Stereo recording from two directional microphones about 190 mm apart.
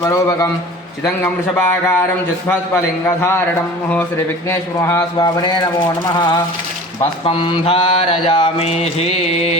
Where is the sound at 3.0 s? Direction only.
15° left (ahead or behind).